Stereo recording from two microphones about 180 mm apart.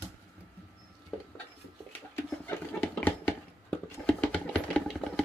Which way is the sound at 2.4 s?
10° left (ahead or behind).